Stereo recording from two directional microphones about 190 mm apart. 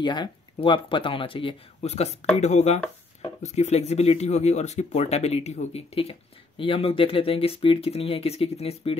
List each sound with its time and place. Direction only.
0.0 s speech: 25° left (ahead or behind)